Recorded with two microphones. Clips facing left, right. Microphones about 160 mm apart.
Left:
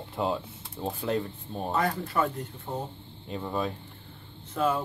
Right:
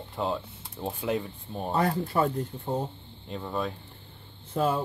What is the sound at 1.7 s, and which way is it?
Speech, 30° right (ahead or behind).